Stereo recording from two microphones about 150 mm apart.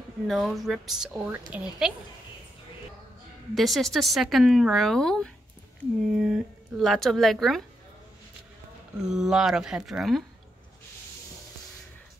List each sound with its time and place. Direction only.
0.3 s speech: centre (ahead or behind)
3.5 s speech: centre (ahead or behind)
9.0 s speech: 5° right (ahead or behind)